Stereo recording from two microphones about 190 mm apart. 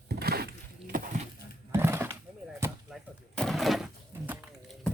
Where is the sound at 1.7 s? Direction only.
10° right (ahead or behind).